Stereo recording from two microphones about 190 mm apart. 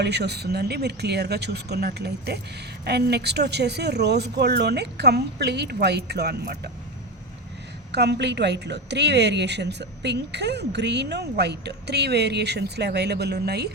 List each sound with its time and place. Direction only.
0.0 s a woman's voice: 60° right (ahead or behind)
7.9 s a woman's voice: 60° right (ahead or behind)